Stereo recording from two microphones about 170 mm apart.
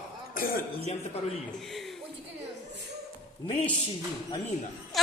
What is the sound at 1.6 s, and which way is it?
Speech, centre (ahead or behind).